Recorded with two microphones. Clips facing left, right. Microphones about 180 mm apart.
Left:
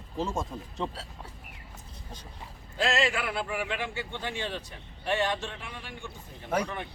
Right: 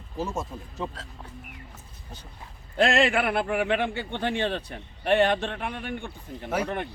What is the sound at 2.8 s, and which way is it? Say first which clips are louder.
A man's voice: right 6 dB; 60° right (ahead or behind).